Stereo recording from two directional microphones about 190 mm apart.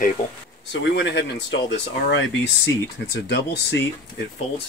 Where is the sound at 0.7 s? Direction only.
70° left (ahead or behind).